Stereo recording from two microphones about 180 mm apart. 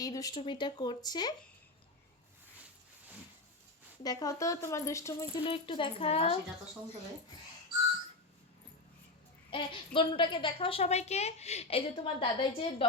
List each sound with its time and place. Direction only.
0.0 s speech: 20° left (ahead or behind)
4.0 s speech: 20° left (ahead or behind)
9.5 s a woman's voice: 30° left (ahead or behind)